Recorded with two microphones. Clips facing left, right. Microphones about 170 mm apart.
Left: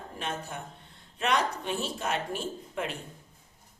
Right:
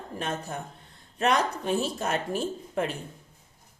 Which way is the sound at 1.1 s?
40° right (ahead or behind).